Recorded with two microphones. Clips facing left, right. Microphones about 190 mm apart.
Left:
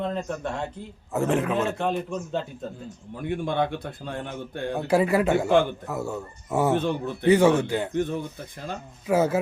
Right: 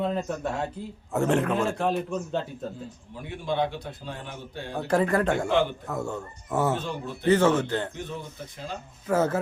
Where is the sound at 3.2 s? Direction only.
55° left (ahead or behind).